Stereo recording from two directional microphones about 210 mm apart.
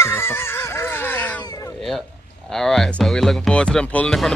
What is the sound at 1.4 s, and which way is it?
Cat, 20° left (ahead or behind).